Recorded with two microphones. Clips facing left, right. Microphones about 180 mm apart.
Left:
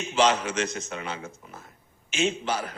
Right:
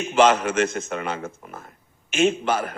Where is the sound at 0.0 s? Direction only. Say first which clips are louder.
Right 5 dB; 55° right (ahead or behind).